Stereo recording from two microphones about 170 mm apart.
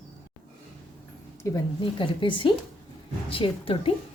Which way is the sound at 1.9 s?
30° left (ahead or behind).